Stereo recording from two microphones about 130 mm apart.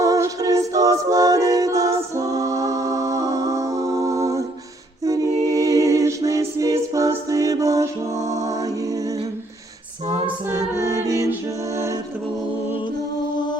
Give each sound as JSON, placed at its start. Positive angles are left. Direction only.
{"t": 0.0, "sound": "a capella", "side_deg": -25}
{"t": 5.0, "sound": "music", "side_deg": -25}
{"t": 5.4, "sound": "a capella", "side_deg": -25}
{"t": 10.5, "sound": "music", "side_deg": -25}
{"t": 13.3, "sound": "music", "side_deg": 35}